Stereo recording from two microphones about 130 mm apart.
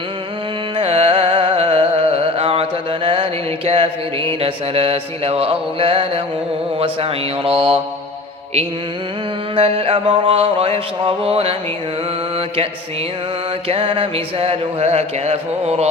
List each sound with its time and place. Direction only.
0.8 s carnatic music: 45° right (ahead or behind)
3.7 s mantra: 45° right (ahead or behind)
9.6 s mantra: 45° right (ahead or behind)
13.7 s mantra: 40° right (ahead or behind)